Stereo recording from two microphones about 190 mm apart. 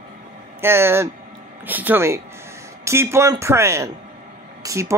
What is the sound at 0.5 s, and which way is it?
A man's voice, 10° right (ahead or behind).